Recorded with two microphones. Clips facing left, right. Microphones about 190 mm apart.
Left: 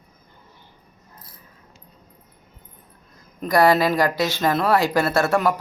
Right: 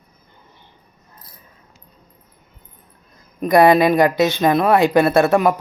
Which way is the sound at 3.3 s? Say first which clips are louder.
Right 5 dB; 20° right (ahead or behind).